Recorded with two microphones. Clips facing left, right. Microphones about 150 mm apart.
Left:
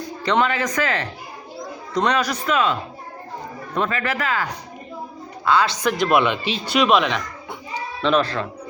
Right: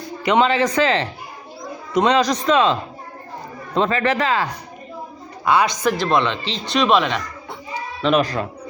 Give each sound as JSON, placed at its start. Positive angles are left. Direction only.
{"t": 0.3, "sound": "speech", "side_deg": -20}
{"t": 2.5, "sound": "speech", "side_deg": -35}
{"t": 3.8, "sound": "speech", "side_deg": -30}
{"t": 5.5, "sound": "speech", "side_deg": -20}
{"t": 6.1, "sound": "speech", "side_deg": 10}
{"t": 7.7, "sound": "a sound", "side_deg": -10}